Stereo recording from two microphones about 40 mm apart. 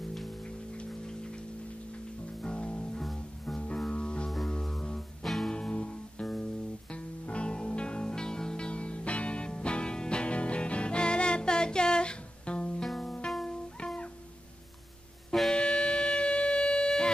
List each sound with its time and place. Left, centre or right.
0.8 s a sound: centre
2.4 s music: left
5.2 s music: centre
5.5 s music: left
12.8 s music: centre
13.5 s music: left
15.5 s wind instrument: left